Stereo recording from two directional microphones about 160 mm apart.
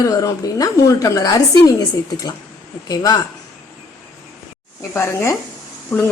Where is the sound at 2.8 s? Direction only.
25° left (ahead or behind).